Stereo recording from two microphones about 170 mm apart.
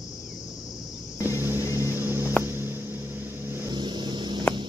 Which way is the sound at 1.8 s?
15° right (ahead or behind).